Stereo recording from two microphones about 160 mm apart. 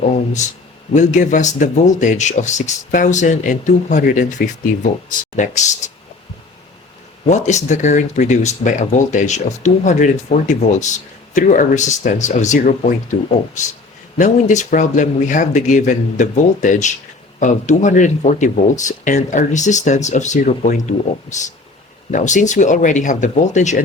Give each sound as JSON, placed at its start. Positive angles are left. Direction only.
{"t": 0.4, "sound": "speech", "side_deg": 50}
{"t": 7.3, "sound": "speech", "side_deg": 45}